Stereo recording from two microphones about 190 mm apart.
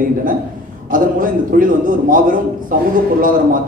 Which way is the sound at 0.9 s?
45° right (ahead or behind).